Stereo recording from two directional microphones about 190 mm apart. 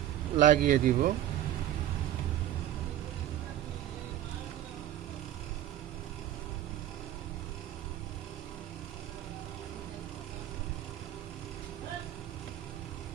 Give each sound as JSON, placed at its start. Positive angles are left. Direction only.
{"t": 0.3, "sound": "speech", "side_deg": -45}